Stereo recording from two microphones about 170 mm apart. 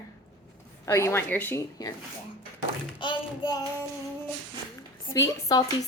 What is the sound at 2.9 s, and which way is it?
Speech, 25° left (ahead or behind).